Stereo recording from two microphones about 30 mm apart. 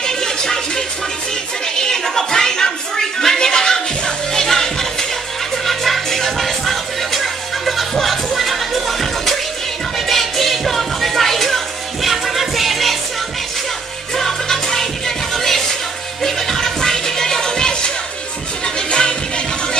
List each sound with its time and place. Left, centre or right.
0.0 s music: left
1.8 s a sound: centre
3.3 s music: centre
14.1 s music: centre